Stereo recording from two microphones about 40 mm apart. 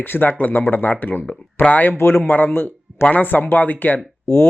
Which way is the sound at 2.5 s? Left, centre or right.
Left.